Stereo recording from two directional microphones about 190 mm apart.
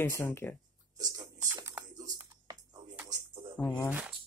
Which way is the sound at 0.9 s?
20° right (ahead or behind).